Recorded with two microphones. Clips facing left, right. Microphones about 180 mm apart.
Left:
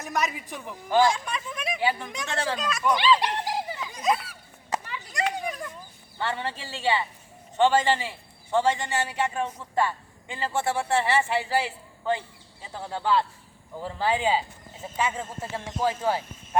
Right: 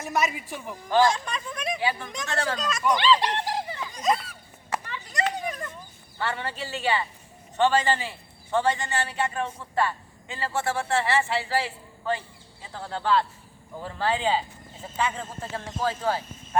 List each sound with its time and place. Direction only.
0.0 s speech: 5° right (ahead or behind)
0.9 s speech: 10° left (ahead or behind)
2.2 s speech: 15° left (ahead or behind)
4.9 s a sound: centre (ahead or behind)
6.1 s a woman's voice: 20° left (ahead or behind)